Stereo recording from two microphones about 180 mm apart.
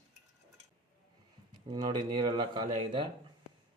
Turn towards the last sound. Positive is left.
turn(degrees=-25)  # may be behind; listen again after turning